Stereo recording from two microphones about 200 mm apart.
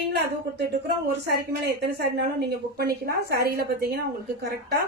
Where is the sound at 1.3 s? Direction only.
55° right (ahead or behind).